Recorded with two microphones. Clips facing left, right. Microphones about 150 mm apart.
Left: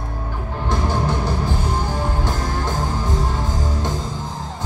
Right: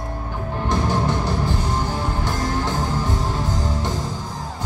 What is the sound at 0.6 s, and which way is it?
Music, 15° right (ahead or behind).